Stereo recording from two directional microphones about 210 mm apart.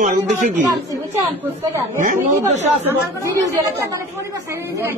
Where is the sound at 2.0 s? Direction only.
40° right (ahead or behind).